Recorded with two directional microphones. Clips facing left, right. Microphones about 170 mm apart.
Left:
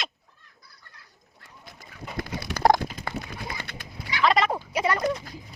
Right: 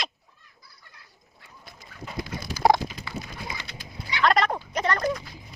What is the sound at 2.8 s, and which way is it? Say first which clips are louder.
Dog: left 2 dB; 50° left (ahead or behind).